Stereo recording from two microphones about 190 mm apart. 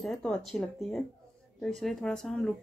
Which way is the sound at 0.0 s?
5° left (ahead or behind).